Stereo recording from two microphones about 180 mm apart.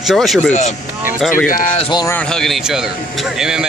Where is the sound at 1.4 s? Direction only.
45° left (ahead or behind).